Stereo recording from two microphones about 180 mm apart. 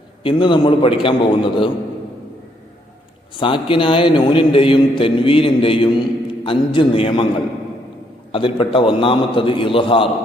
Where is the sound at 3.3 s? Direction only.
25° left (ahead or behind).